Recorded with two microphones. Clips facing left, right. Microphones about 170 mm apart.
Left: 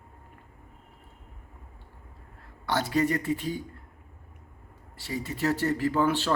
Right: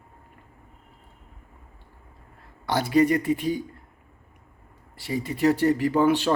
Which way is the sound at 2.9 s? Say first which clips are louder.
Right 8 dB; 15° right (ahead or behind).